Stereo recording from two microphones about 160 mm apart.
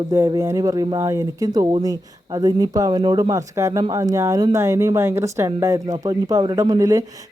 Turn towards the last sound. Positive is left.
turn(degrees=-20)  # may be behind; listen again after turning